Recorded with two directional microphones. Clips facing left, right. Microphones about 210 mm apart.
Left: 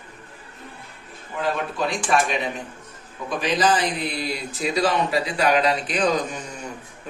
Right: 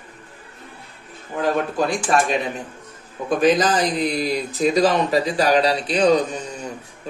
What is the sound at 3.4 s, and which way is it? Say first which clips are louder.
Speech: right 4 dB; 45° right (ahead or behind).